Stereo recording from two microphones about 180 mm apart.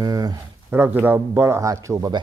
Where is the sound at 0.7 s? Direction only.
10° right (ahead or behind).